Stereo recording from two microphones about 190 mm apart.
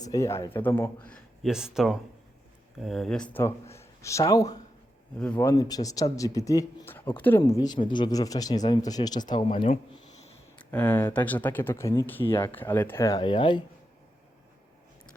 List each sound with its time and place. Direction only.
0.0 s a man's voice: 15° left (ahead or behind)
7.6 s speech: 25° left (ahead or behind)
10.6 s speech: 10° left (ahead or behind); by 13.7 s 25° left (ahead or behind)